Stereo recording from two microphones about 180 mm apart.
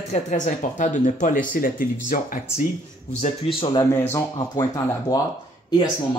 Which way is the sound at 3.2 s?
30° left (ahead or behind).